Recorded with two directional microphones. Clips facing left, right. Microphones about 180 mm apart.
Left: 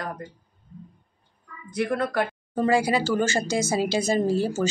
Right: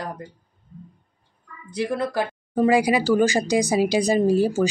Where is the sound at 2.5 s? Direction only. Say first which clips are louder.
Right 4 dB; 15° right (ahead or behind).